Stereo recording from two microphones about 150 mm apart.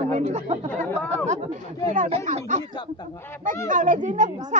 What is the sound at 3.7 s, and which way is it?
Speech, 60° right (ahead or behind).